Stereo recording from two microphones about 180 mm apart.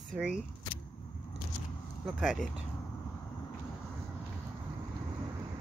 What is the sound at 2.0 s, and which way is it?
Speech, centre (ahead or behind).